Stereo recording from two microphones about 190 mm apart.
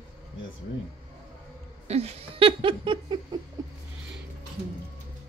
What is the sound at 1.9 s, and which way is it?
Laughter, 35° right (ahead or behind).